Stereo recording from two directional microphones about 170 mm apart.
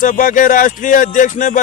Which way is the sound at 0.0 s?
50° left (ahead or behind).